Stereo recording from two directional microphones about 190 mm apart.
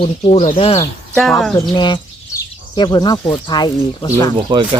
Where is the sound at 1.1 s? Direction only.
Centre (ahead or behind).